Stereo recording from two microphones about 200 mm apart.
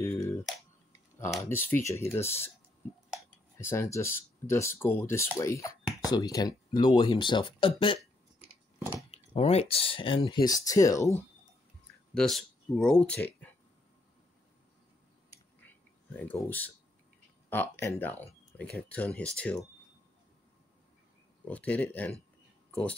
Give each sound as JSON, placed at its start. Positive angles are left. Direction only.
{"t": 0.0, "sound": "a sound", "side_deg": 10}
{"t": 1.4, "sound": "speech", "side_deg": 10}
{"t": 2.8, "sound": "a sound", "side_deg": 10}
{"t": 3.5, "sound": "speech", "side_deg": 10}
{"t": 9.1, "sound": "speech", "side_deg": 30}
{"t": 12.1, "sound": "speech", "side_deg": 0}
{"t": 15.6, "sound": "a sound", "side_deg": 10}
{"t": 17.5, "sound": "speech", "side_deg": 10}
{"t": 21.5, "sound": "speech", "side_deg": 5}